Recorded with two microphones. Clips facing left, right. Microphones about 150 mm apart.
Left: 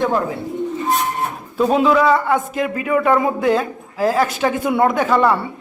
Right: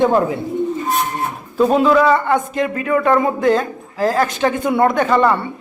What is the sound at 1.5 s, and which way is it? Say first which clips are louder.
Speech: right 2 dB; centre (ahead or behind).